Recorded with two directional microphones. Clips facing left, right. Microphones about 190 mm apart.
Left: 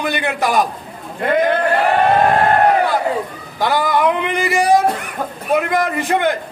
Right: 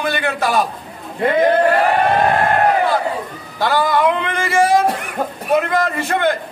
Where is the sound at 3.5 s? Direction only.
15° left (ahead or behind).